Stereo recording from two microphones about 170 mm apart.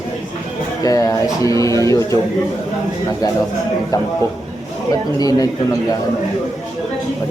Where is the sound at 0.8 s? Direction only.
20° left (ahead or behind).